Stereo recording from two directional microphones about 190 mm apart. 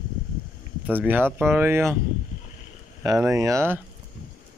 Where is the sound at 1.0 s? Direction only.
10° right (ahead or behind).